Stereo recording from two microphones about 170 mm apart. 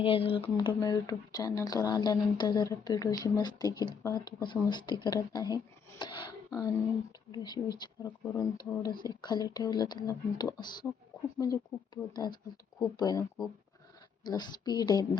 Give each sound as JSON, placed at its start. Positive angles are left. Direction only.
{"t": 0.0, "sound": "speech", "side_deg": 35}
{"t": 14.3, "sound": "speech", "side_deg": 25}